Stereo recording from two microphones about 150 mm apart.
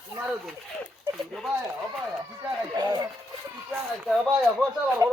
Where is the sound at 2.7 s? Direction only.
25° right (ahead or behind).